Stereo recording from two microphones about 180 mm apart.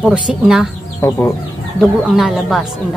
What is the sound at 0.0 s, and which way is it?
Speech, 5° right (ahead or behind).